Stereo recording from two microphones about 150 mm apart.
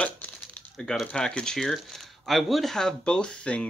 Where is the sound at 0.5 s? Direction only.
5° left (ahead or behind).